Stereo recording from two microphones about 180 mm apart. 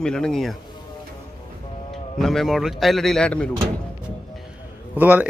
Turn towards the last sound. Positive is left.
turn(degrees=-10)  # may be behind; listen again after turning